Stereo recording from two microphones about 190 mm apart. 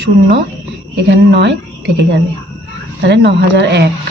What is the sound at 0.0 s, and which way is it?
A woman's voice, 65° right (ahead or behind).